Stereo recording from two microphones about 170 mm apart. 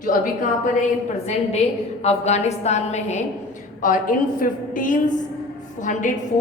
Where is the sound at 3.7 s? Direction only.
50° left (ahead or behind).